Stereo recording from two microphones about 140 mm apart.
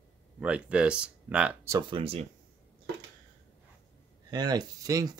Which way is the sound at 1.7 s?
30° right (ahead or behind).